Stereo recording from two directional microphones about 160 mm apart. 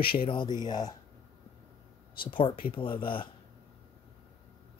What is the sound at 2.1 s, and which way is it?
Speech, 30° left (ahead or behind).